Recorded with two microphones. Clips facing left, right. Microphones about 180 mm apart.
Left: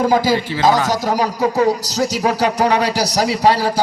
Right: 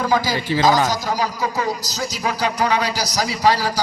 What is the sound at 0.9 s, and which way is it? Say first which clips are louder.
A man's voice: left 4 dB; 70° left (ahead or behind).